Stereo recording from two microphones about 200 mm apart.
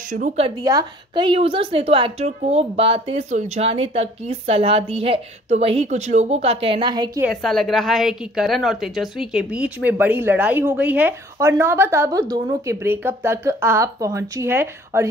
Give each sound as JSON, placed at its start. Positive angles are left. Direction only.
{"t": 0.1, "sound": "speech", "side_deg": -35}
{"t": 0.6, "sound": "a woman's voice", "side_deg": -20}
{"t": 7.2, "sound": "a woman's voice", "side_deg": 0}